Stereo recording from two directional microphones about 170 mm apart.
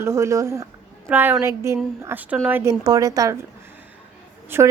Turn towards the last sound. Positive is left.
turn(degrees=-15)  # may be behind; listen again after turning